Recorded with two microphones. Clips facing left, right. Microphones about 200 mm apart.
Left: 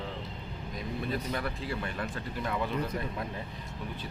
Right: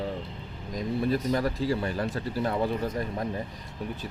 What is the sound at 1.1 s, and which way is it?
Speech, 40° right (ahead or behind).